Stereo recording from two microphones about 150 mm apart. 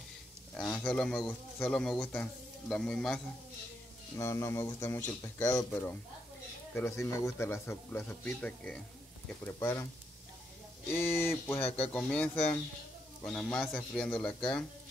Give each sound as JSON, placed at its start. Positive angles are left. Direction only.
{"t": 0.6, "sound": "speech", "side_deg": 5}
{"t": 4.2, "sound": "speech", "side_deg": 15}
{"t": 6.7, "sound": "speech", "side_deg": 15}
{"t": 10.9, "sound": "speech", "side_deg": 15}